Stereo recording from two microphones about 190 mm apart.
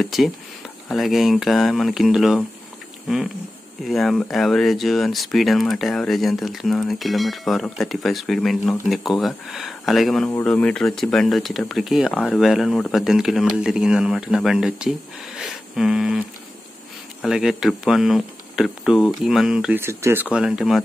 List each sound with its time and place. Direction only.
0.0 s speech: centre (ahead or behind)
3.8 s speech: centre (ahead or behind)
15.4 s a sound: centre (ahead or behind)
17.2 s speech: centre (ahead or behind)